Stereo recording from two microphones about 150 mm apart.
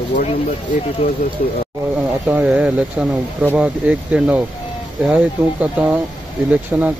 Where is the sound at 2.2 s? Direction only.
10° right (ahead or behind).